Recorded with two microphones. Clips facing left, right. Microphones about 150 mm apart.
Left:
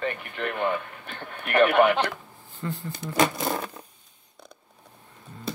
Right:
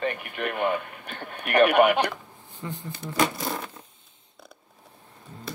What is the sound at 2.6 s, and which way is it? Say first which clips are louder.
Speech: left 3 dB; 15° right (ahead or behind).